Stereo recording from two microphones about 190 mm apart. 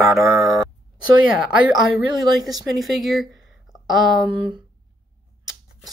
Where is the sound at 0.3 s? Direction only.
Centre (ahead or behind).